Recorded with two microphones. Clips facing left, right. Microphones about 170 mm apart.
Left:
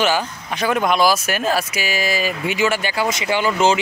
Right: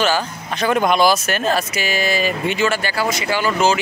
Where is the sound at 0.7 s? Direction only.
Centre (ahead or behind).